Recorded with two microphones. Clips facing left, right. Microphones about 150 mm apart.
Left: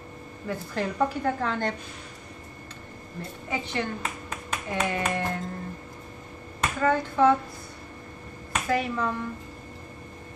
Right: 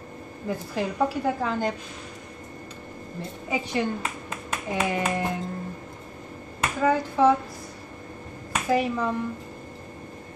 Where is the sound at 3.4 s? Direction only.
15° right (ahead or behind).